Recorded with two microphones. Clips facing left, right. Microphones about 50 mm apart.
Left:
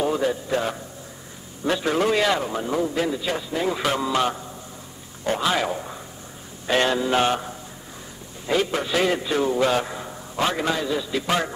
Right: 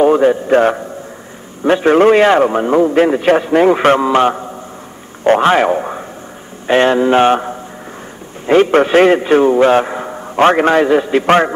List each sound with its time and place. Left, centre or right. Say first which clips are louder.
0.0 s a man's voice: right 13 dB; right
6.7 s a man's voice: right 10 dB; right